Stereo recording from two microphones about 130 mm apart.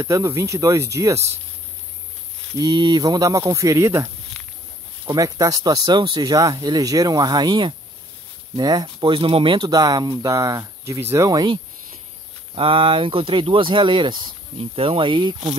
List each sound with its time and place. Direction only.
0.0 s speech: 20° right (ahead or behind)
2.6 s speech: 35° right (ahead or behind)
4.4 s walk: 10° left (ahead or behind)
5.0 s speech: 25° right (ahead or behind)